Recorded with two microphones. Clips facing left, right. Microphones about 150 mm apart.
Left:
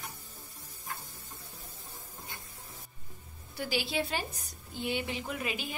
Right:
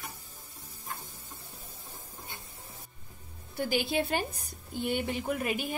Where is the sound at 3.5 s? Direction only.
50° right (ahead or behind).